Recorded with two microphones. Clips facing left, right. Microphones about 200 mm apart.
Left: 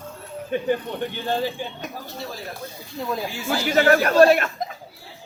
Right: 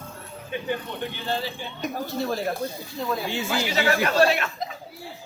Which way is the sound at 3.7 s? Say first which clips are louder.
Left 7 dB; 50° left (ahead or behind).